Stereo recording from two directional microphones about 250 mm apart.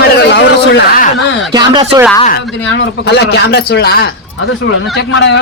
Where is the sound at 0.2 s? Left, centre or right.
Left.